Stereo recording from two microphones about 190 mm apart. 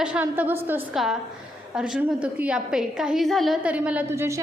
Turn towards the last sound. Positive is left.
turn(degrees=-15)  # may be behind; listen again after turning